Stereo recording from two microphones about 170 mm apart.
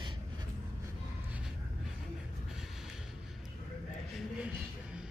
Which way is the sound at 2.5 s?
5° right (ahead or behind).